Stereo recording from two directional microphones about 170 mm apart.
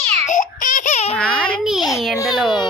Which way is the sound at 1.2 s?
5° left (ahead or behind).